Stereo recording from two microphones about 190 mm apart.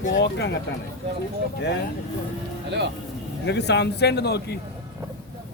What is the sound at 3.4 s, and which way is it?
Speech, 65° left (ahead or behind).